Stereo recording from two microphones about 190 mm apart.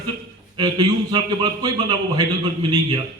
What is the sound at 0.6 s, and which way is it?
A man's voice, 20° right (ahead or behind).